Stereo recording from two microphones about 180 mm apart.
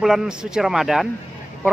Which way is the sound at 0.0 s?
Centre (ahead or behind).